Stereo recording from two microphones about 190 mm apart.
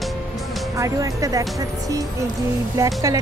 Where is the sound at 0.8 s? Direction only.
20° right (ahead or behind).